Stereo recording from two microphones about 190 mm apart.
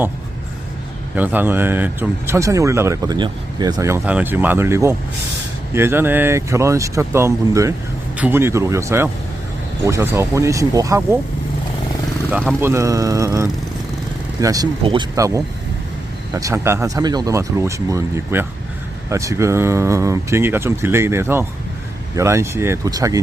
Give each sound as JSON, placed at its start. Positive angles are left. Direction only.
{"t": 1.1, "sound": "speech", "side_deg": -10}
{"t": 12.5, "sound": "speech", "side_deg": -15}